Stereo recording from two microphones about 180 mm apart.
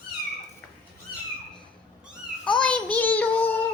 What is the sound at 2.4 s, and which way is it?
Child singing, 5° left (ahead or behind).